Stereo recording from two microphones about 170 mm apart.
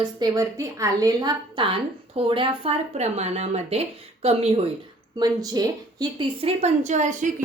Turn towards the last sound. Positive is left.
turn(degrees=-45)  # may be behind; listen again after turning